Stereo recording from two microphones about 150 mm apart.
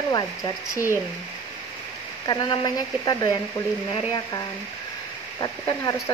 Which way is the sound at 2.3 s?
25° left (ahead or behind).